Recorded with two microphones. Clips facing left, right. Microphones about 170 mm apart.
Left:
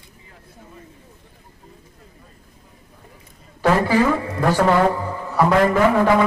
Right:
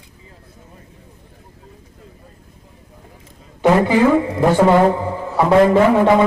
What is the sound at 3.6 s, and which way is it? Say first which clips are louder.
A man's voice: right 4 dB; 20° right (ahead or behind).